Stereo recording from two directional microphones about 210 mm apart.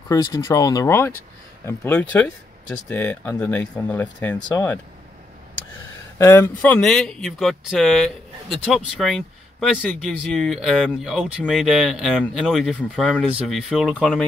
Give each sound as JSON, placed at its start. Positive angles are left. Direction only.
{"t": 0.1, "sound": "speech", "side_deg": 15}
{"t": 6.1, "sound": "speech", "side_deg": 15}